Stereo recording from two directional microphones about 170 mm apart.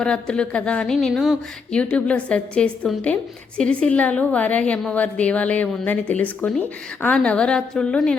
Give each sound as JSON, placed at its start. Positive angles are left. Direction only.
{"t": 0.0, "sound": "a woman's voice", "side_deg": 5}